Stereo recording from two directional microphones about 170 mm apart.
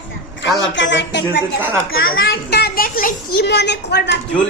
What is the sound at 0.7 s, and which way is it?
Speech, 90° left.